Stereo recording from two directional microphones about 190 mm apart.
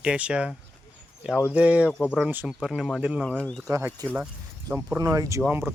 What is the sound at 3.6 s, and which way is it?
Speech, 15° right (ahead or behind).